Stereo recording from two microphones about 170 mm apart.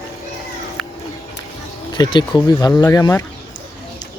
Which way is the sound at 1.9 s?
25° left (ahead or behind).